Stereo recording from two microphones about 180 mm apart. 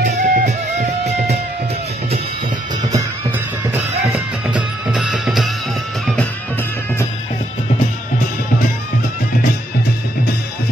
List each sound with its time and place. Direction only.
0.0 s music: 55° right (ahead or behind)
0.5 s music: 40° right (ahead or behind)
2.9 s music: 10° right (ahead or behind)